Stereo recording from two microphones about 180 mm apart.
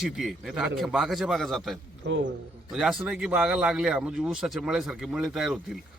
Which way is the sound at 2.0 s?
90° right.